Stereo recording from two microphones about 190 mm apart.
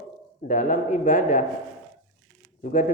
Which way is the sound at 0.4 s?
45° left (ahead or behind).